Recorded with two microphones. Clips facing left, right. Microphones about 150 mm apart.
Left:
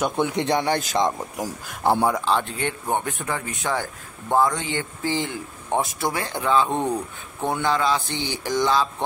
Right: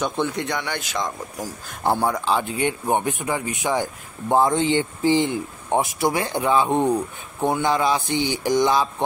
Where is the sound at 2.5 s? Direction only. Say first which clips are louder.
Right 4 dB; 15° right (ahead or behind).